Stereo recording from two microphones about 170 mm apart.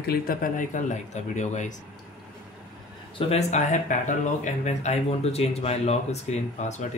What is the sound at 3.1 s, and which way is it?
Speech, 40° left (ahead or behind).